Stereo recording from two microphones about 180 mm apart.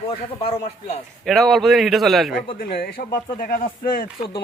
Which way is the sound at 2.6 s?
60° left (ahead or behind).